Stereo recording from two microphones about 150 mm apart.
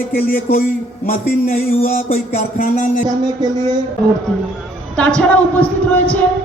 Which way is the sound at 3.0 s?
25° right (ahead or behind).